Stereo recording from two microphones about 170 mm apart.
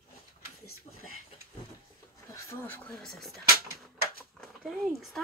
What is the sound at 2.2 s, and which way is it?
Speech, 15° left (ahead or behind).